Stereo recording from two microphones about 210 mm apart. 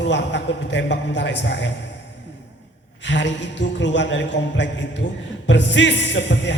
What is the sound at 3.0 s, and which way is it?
Speech, 55° left (ahead or behind).